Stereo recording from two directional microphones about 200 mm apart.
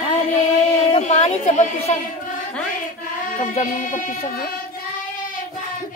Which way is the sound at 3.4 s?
40° left (ahead or behind).